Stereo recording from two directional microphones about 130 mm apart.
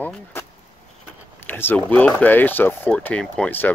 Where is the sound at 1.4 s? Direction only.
15° left (ahead or behind).